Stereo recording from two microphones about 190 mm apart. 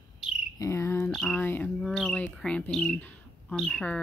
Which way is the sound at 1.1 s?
10° left (ahead or behind).